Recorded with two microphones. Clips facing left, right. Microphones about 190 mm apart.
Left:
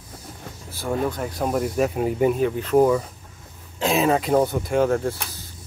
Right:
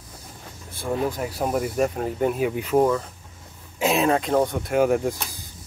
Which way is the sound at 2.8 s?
10° left (ahead or behind).